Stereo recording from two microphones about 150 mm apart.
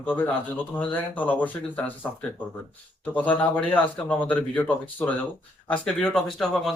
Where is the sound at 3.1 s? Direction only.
10° left (ahead or behind).